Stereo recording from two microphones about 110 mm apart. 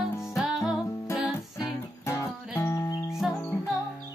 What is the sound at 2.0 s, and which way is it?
Music, 25° left (ahead or behind).